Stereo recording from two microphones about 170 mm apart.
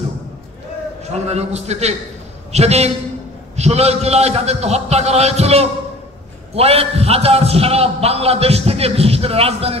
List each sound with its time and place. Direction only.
1.1 s a man's voice: 40° right (ahead or behind)